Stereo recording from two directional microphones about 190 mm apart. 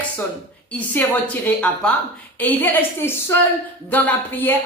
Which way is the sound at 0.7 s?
10° left (ahead or behind).